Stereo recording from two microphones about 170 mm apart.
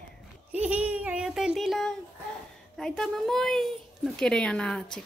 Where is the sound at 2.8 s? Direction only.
5° left (ahead or behind).